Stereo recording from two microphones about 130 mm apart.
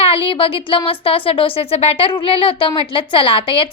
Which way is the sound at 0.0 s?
45° left (ahead or behind).